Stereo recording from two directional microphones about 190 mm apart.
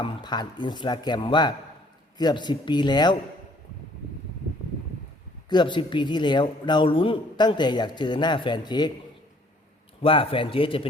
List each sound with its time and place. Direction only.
0.0 s speech: 25° left (ahead or behind)
5.5 s speech: 25° left (ahead or behind)
10.0 s speech: 30° left (ahead or behind)